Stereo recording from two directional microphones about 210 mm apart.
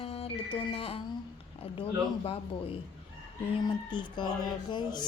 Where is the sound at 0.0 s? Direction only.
25° left (ahead or behind).